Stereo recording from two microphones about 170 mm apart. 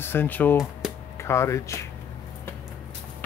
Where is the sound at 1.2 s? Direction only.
15° left (ahead or behind).